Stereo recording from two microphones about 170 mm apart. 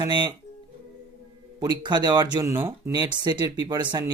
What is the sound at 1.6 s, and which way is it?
Speech, 25° right (ahead or behind).